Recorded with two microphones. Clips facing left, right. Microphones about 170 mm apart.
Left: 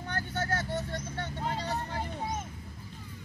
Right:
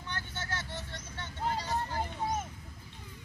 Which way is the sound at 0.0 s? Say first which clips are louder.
Left 7 dB; 45° left (ahead or behind).